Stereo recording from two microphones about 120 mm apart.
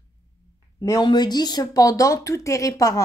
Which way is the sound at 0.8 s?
30° left (ahead or behind).